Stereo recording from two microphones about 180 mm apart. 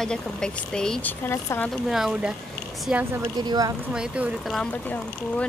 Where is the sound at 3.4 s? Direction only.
20° right (ahead or behind).